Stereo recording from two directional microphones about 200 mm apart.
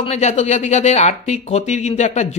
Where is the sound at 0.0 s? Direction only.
35° left (ahead or behind).